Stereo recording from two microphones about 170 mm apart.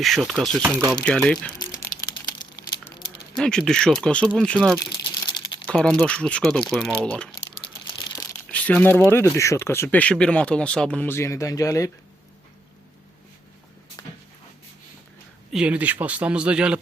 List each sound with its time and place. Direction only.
0.0 s speech: centre (ahead or behind)
1.5 s crumpling: 25° left (ahead or behind)
3.3 s speech: 5° left (ahead or behind)
4.8 s crumpling: 30° left (ahead or behind)
5.6 s speech: 5° left (ahead or behind)
8.0 s a sound: 20° left (ahead or behind)
8.4 s speech: 10° left (ahead or behind)
15.5 s speech: 5° right (ahead or behind)